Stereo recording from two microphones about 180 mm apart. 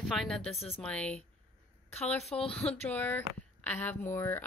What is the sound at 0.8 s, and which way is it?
Speech, 5° left (ahead or behind).